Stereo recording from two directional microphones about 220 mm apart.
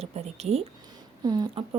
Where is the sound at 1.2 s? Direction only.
15° right (ahead or behind).